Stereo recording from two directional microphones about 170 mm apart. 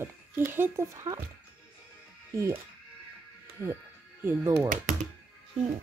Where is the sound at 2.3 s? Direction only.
20° right (ahead or behind).